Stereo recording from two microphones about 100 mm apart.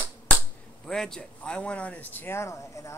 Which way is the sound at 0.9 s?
5° left (ahead or behind).